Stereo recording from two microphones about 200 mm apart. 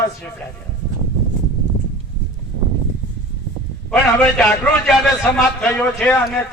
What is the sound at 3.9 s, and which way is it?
A man's voice, 5° left (ahead or behind).